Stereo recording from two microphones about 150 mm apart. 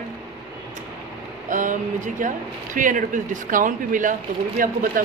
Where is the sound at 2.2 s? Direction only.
60° right (ahead or behind).